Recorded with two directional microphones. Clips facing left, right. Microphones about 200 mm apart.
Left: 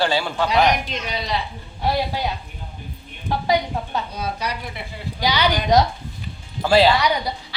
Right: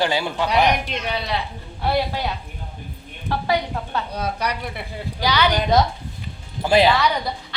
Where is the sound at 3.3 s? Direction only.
15° left (ahead or behind).